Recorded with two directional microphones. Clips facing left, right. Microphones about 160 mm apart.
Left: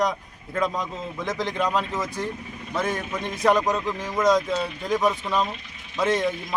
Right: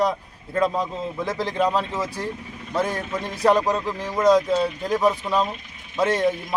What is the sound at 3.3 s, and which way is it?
Speech, 30° right (ahead or behind).